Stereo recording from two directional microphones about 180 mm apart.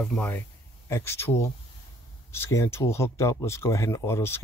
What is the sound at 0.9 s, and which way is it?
Speech, 15° left (ahead or behind).